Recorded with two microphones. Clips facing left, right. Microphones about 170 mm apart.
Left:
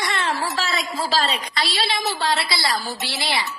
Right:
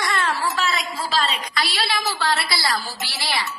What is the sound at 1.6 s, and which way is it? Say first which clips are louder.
A woman's voice: right 1 dB; 25° left (ahead or behind).